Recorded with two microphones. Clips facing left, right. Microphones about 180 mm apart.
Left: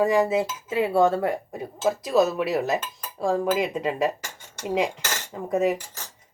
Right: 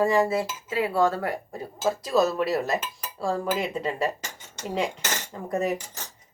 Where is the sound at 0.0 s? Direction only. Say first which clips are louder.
Left 2 dB; 15° left (ahead or behind).